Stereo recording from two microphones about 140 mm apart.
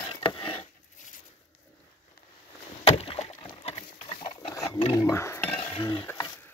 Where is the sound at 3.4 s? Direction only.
45° left (ahead or behind).